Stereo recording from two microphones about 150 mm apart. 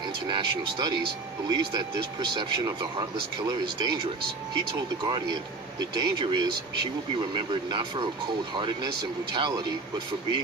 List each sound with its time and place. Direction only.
0.3 s speech: 30° right (ahead or behind)
5.0 s speech: 30° right (ahead or behind)
9.3 s speech: 30° right (ahead or behind)